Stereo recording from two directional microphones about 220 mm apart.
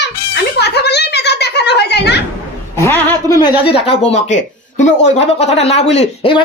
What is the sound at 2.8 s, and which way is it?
Speech, 15° left (ahead or behind).